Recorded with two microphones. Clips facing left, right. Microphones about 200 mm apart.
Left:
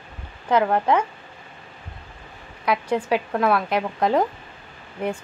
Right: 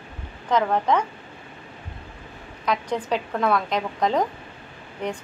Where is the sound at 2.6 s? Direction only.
10° left (ahead or behind).